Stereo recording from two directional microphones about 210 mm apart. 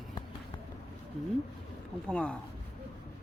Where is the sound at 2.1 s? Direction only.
5° left (ahead or behind).